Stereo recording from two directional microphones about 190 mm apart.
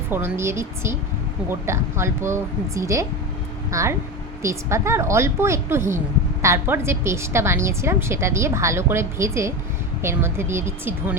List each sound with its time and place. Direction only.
0.1 s a woman's voice: 15° right (ahead or behind)